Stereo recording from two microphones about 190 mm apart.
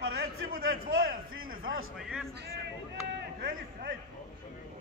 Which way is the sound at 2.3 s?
55° right (ahead or behind).